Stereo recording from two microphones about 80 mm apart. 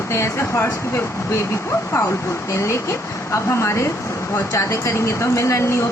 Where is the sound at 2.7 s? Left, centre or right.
Left.